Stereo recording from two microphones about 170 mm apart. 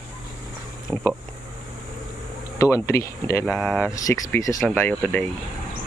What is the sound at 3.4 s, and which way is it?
Speech, 5° left (ahead or behind).